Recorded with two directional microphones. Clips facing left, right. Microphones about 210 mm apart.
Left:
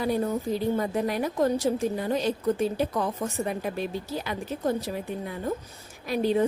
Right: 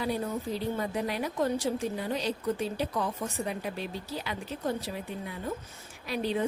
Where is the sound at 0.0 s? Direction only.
45° left (ahead or behind).